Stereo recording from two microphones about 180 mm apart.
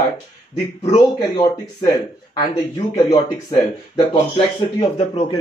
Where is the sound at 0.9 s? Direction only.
25° left (ahead or behind).